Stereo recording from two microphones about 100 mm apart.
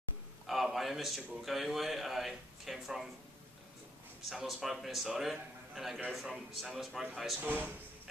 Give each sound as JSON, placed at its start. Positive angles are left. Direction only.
{"t": 0.5, "sound": "a sound", "side_deg": 0}
{"t": 1.4, "sound": "a man's voice", "side_deg": 0}
{"t": 4.3, "sound": "a man's voice", "side_deg": -5}
{"t": 7.3, "sound": "speech", "side_deg": -20}